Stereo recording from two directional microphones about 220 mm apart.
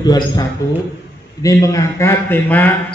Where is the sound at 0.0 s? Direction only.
15° left (ahead or behind).